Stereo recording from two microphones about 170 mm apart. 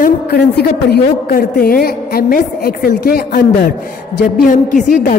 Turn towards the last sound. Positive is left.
turn(degrees=50)  # may be behind; listen again after turning